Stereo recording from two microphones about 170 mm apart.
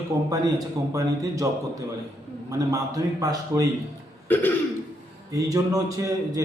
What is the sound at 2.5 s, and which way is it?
A man's voice, 20° right (ahead or behind).